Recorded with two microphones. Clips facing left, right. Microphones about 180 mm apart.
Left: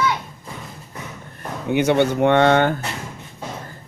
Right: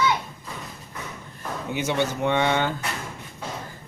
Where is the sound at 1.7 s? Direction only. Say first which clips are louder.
Left 9 dB; 60° left (ahead or behind).